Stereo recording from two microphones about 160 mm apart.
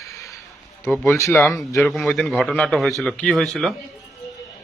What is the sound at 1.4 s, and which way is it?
A man's voice, centre (ahead or behind).